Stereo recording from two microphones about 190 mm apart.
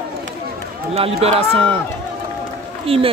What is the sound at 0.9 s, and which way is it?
Speech, 30° right (ahead or behind).